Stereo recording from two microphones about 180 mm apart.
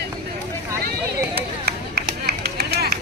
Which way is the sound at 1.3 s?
60° right (ahead or behind).